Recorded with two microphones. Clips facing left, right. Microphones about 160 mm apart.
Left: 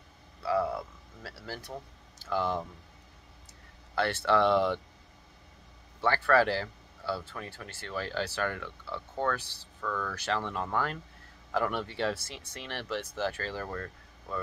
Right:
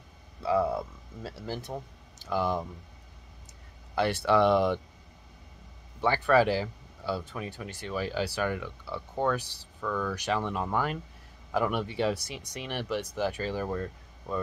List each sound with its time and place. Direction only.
0.4 s a sound: 20° right (ahead or behind)
3.9 s speech: 15° right (ahead or behind)
5.9 s speech: 15° right (ahead or behind)